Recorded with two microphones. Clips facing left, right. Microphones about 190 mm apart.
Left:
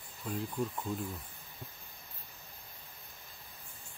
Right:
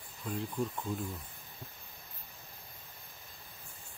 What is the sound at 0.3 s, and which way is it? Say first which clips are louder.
Speech: even; centre (ahead or behind).